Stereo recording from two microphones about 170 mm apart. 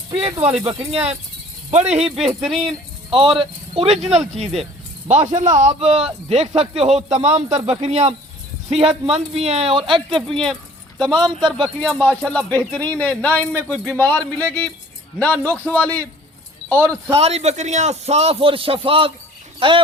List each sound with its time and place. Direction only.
0.1 s speech: 30° right (ahead or behind)
0.4 s speech: 10° right (ahead or behind)
0.7 s a man's voice: 35° right (ahead or behind)
2.4 s speech: centre (ahead or behind)
3.1 s a man's voice: 30° right (ahead or behind)
10.4 s speech: centre (ahead or behind)
16.7 s speech: 15° right (ahead or behind)
17.2 s a man's voice: 35° right (ahead or behind)